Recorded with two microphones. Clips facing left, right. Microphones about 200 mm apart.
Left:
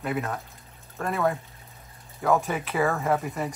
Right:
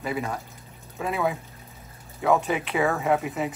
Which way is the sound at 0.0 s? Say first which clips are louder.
Even; centre (ahead or behind).